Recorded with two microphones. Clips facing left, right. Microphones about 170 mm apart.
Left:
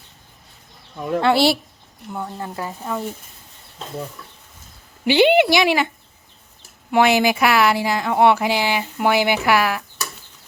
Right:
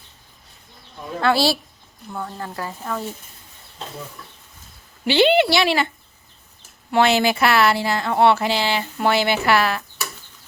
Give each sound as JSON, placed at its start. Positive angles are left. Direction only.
{"t": 1.2, "sound": "speech", "side_deg": 20}
{"t": 5.0, "sound": "speech", "side_deg": 15}
{"t": 6.9, "sound": "speech", "side_deg": 15}